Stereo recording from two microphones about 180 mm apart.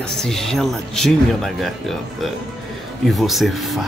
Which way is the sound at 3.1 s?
Centre (ahead or behind).